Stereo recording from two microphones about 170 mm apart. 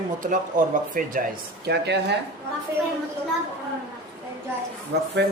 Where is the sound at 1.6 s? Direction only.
75° right (ahead or behind).